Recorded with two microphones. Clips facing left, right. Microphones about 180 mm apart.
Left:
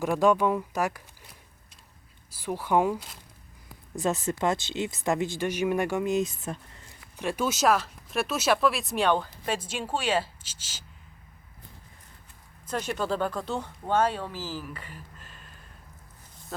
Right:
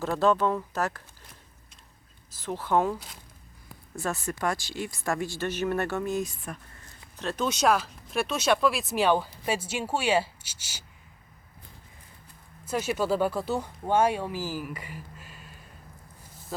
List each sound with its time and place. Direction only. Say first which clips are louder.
0.0 s speech: left 1 dB; 15° left (ahead or behind)
2.3 s speech: left 1 dB; 10° left (ahead or behind)
7.2 s speech: left 1 dB; 10° left (ahead or behind); by 10.8 s 15° right (ahead or behind)
12.6 s speech: right 2 dB; 5° right (ahead or behind)